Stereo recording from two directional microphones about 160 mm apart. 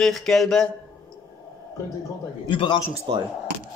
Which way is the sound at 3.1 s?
30° right (ahead or behind).